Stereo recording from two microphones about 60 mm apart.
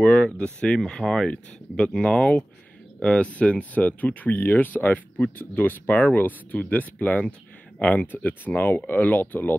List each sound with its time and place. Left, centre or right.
0.0 s speech: centre